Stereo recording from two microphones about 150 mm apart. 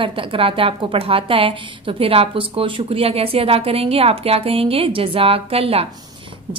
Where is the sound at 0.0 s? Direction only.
35° right (ahead or behind).